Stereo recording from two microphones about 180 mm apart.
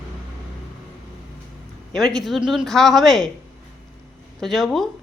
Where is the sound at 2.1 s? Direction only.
Centre (ahead or behind).